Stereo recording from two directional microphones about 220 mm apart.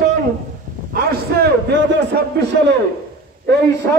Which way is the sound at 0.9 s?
45° right (ahead or behind).